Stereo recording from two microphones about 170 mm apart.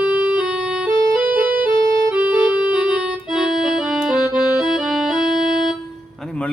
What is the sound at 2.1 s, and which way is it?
Accordion, 5° right (ahead or behind).